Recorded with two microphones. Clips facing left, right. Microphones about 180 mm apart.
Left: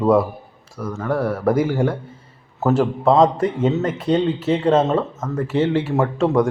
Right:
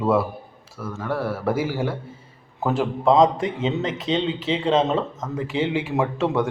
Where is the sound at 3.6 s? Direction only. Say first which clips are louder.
Left 5 dB; 10° left (ahead or behind).